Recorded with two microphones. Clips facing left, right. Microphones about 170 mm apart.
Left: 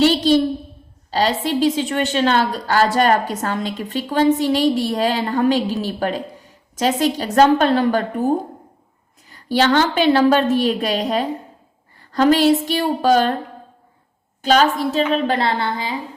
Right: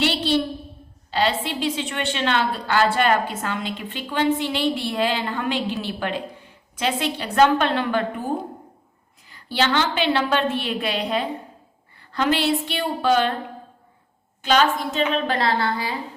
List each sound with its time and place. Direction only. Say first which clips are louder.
0.0 s a sound: left 8 dB; 40° left (ahead or behind)
1.1 s a woman's voice: left 4 dB; 40° left (ahead or behind)
14.4 s a woman's voice: left 4 dB; 40° left (ahead or behind); by 16.0 s 20° left (ahead or behind)